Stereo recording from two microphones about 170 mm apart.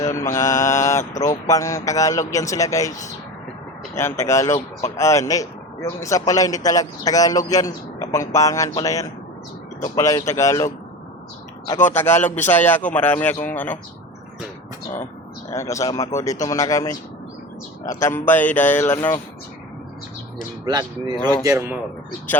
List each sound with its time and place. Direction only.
0.3 s mantra: 15° left (ahead or behind)
1.5 s a man's voice: 20° left (ahead or behind)
4.2 s a man's voice: 15° left (ahead or behind)
11.7 s a man's voice: 15° left (ahead or behind)
15.4 s a man's voice: 20° left (ahead or behind)
20.7 s speech: 25° right (ahead or behind)